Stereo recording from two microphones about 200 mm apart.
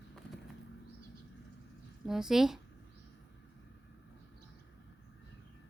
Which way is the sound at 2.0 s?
Centre (ahead or behind).